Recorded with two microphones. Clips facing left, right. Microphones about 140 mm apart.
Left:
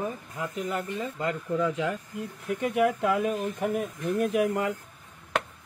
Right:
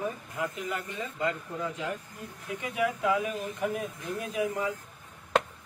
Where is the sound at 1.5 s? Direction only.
90° left.